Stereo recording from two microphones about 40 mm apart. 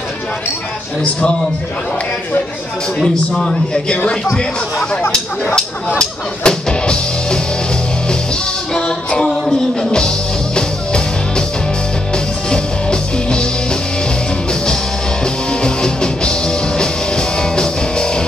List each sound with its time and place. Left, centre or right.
3.0 s music: centre
3.7 s speech: left
8.7 s music: centre
12.4 s music: left
15.5 s music: left